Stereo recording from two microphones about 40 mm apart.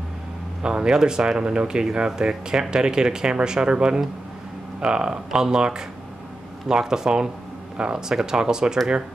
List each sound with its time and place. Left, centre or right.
0.6 s speech: right